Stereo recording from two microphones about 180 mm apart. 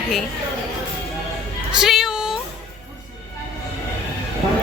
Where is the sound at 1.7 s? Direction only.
Centre (ahead or behind).